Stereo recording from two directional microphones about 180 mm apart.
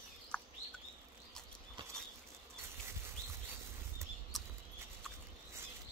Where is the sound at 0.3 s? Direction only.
5° left (ahead or behind).